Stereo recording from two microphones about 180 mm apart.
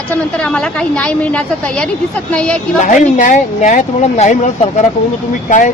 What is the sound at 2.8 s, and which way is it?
Speech, 45° left (ahead or behind).